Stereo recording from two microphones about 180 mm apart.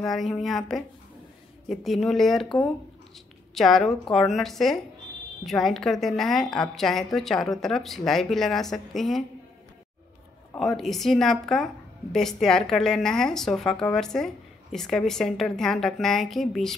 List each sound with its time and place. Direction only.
0.0 s a woman's voice: centre (ahead or behind)
10.6 s a woman's voice: centre (ahead or behind)